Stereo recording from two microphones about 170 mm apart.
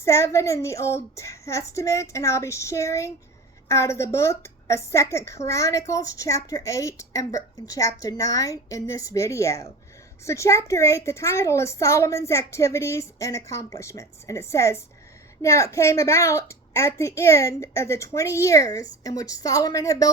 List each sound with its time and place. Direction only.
0.0 s a woman's voice: 15° left (ahead or behind)